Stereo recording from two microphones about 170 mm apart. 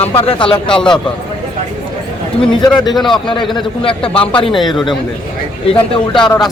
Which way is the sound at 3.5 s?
30° left (ahead or behind).